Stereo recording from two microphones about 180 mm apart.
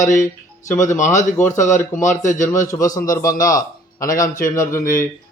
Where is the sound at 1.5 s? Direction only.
45° left (ahead or behind).